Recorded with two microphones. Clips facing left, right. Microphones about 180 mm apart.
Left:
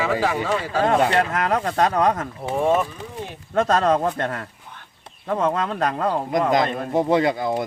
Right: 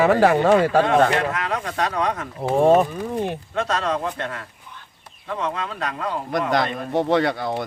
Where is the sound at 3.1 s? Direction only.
55° right (ahead or behind).